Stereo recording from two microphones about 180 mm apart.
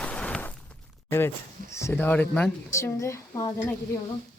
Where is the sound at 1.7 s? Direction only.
15° left (ahead or behind).